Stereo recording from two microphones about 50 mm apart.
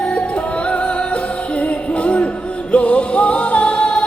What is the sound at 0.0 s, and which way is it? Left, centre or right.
Music, left.